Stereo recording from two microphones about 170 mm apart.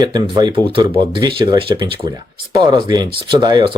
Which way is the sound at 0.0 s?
25° right (ahead or behind).